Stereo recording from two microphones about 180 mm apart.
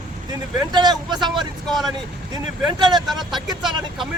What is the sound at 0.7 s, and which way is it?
Speech, 25° right (ahead or behind).